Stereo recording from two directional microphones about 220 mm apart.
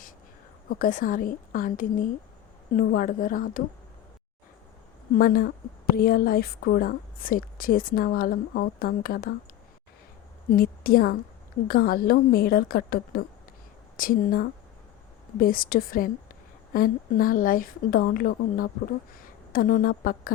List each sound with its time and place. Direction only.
0.7 s a woman's voice: 40° left (ahead or behind)
5.1 s a woman's voice: 40° left (ahead or behind)
10.5 s a woman's voice: 40° left (ahead or behind)